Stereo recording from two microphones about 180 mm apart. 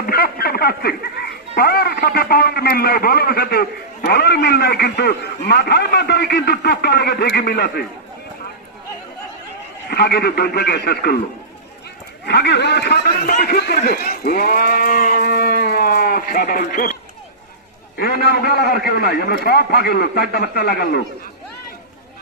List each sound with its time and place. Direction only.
0.0 s speech: 60° left (ahead or behind)
9.9 s speech: 65° left (ahead or behind)
12.2 s a man's voice: 70° left (ahead or behind); by 16.9 s 55° left (ahead or behind)
17.9 s speech: 60° left (ahead or behind)